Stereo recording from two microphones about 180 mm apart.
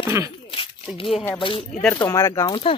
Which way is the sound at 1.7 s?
10° left (ahead or behind).